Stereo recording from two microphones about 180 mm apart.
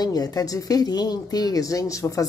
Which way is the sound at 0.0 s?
20° left (ahead or behind).